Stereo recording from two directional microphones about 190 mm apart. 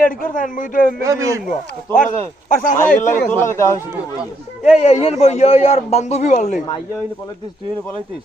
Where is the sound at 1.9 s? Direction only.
45° left (ahead or behind).